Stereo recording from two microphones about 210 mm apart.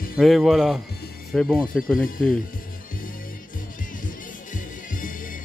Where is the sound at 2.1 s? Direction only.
40° left (ahead or behind).